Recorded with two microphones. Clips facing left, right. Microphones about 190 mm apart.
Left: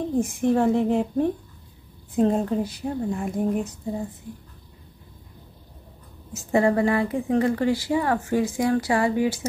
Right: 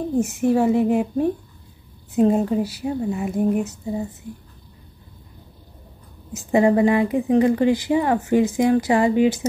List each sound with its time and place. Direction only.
0.1 s speech: 5° right (ahead or behind)
6.3 s a woman's voice: 15° right (ahead or behind)